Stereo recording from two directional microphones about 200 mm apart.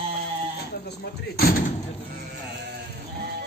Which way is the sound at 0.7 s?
55° left (ahead or behind).